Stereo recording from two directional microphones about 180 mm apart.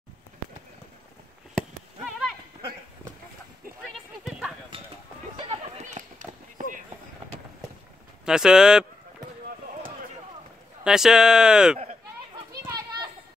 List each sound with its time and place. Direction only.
2.0 s livestock: centre (ahead or behind)
5.4 s a sound: 35° right (ahead or behind)
8.3 s speech: 5° right (ahead or behind)
10.8 s speech: 5° right (ahead or behind)